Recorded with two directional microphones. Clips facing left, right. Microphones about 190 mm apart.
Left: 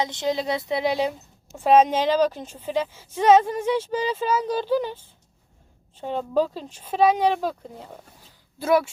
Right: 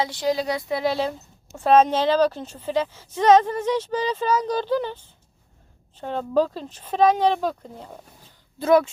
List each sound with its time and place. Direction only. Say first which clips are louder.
0.0 s a woman's voice: right 1 dB; 25° left (ahead or behind)
6.0 s a woman's voice: right 1 dB; 10° left (ahead or behind)
8.6 s a woman's voice: right 3 dB; 5° left (ahead or behind)